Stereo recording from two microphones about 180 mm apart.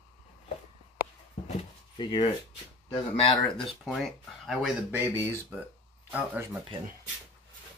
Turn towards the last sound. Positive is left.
turn(degrees=-10)  # may be behind; listen again after turning